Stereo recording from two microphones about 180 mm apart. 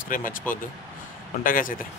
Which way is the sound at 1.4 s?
50° left (ahead or behind).